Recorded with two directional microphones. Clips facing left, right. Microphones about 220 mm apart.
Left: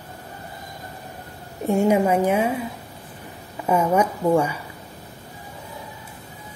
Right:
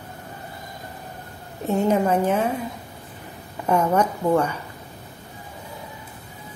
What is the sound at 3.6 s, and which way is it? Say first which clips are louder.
Speech: left 1 dB; 5° left (ahead or behind).